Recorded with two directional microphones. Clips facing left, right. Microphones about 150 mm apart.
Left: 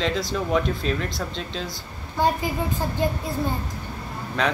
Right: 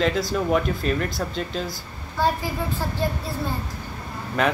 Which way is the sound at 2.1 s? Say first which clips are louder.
Left 1 dB; 20° left (ahead or behind).